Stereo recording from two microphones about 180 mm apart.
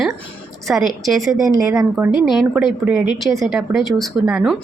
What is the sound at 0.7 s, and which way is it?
A woman's voice, centre (ahead or behind).